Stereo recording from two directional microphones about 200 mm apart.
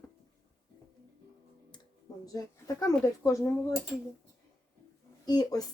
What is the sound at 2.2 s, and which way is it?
Speech, 15° left (ahead or behind).